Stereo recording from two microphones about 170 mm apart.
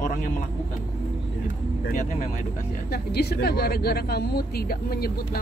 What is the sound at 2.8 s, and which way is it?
A woman's voice, 70° left (ahead or behind).